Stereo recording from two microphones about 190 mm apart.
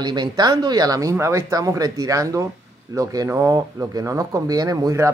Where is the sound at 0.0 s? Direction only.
20° right (ahead or behind).